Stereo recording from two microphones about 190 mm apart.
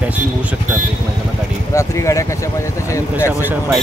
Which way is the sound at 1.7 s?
15° left (ahead or behind).